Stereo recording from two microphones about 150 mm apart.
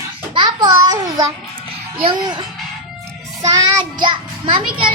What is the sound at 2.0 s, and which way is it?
Speech, 30° right (ahead or behind).